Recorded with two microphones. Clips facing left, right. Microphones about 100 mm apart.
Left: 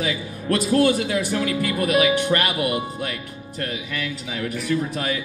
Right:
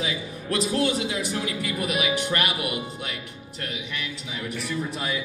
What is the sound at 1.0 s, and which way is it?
Speech, 60° left (ahead or behind).